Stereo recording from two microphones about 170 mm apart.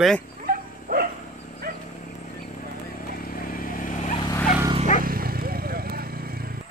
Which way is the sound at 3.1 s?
55° left (ahead or behind).